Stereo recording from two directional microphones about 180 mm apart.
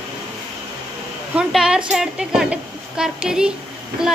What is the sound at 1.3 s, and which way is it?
A woman's voice, 5° right (ahead or behind).